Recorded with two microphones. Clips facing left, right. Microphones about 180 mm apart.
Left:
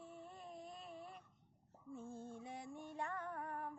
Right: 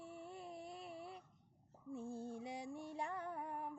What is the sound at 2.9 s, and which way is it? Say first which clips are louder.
Music: left 1 dB; 15° right (ahead or behind).